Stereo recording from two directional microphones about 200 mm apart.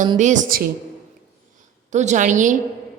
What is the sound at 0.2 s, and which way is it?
Speech, 40° right (ahead or behind).